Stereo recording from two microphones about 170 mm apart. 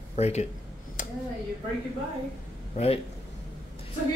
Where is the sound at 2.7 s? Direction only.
35° left (ahead or behind).